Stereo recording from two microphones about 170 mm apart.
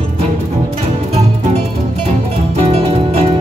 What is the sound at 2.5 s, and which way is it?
Music, 35° right (ahead or behind).